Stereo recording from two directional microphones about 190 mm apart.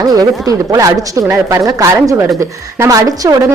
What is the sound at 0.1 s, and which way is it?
A woman's voice, 20° right (ahead or behind).